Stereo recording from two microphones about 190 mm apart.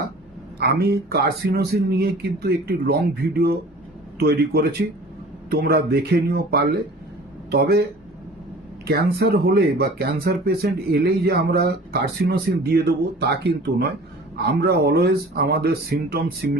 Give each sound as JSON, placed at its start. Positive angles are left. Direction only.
{"t": 0.6, "sound": "speech", "side_deg": -55}
{"t": 8.9, "sound": "speech", "side_deg": -55}